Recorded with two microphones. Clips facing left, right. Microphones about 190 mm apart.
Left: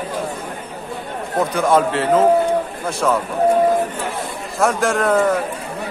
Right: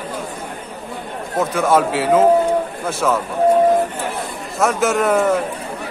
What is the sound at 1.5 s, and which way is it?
A man's voice, centre (ahead or behind).